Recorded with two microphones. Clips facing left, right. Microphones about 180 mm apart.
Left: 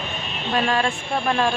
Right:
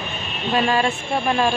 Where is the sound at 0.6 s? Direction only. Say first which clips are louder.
Right 2 dB; 5° right (ahead or behind).